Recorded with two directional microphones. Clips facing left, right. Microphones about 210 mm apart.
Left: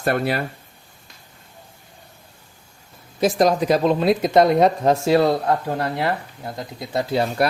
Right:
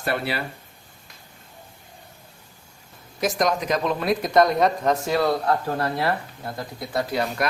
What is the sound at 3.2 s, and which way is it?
Speech, 30° left (ahead or behind).